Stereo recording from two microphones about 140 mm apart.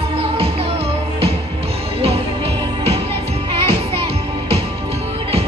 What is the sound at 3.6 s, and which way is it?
Music, 45° right (ahead or behind).